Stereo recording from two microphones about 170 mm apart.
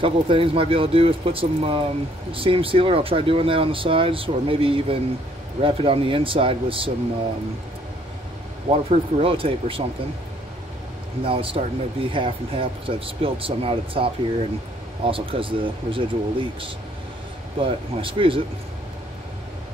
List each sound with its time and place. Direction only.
0.0 s speech: 30° right (ahead or behind)
8.6 s speech: 30° right (ahead or behind)
11.2 s speech: 30° right (ahead or behind)